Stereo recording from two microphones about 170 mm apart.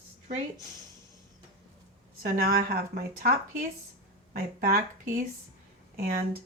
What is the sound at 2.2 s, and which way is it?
Speech, 60° right (ahead or behind).